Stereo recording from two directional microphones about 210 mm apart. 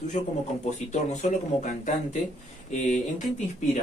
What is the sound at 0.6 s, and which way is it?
Speech, 35° left (ahead or behind).